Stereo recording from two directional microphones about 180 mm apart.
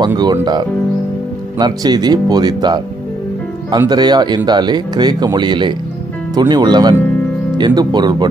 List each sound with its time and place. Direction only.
0.0 s speech: 25° right (ahead or behind)